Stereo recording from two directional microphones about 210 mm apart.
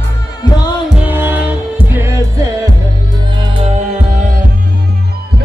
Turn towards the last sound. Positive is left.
turn(degrees=-30)  # may be behind; listen again after turning